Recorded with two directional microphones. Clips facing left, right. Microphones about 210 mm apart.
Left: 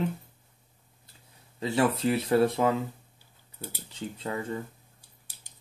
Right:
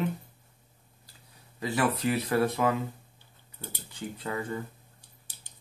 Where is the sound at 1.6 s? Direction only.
25° left (ahead or behind).